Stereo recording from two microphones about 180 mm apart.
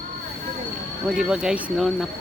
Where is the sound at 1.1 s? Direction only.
5° right (ahead or behind).